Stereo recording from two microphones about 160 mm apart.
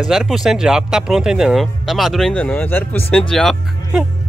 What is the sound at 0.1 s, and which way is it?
Speech, centre (ahead or behind).